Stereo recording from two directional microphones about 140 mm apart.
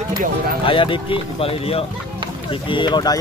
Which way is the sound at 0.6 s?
40° left (ahead or behind).